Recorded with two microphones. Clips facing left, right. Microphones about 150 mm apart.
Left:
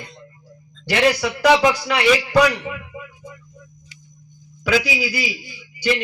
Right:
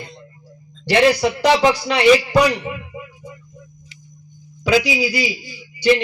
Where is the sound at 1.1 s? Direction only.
30° right (ahead or behind).